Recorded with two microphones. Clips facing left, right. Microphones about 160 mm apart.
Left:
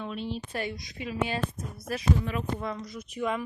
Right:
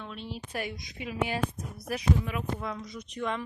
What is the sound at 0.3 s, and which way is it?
Speech, 10° right (ahead or behind).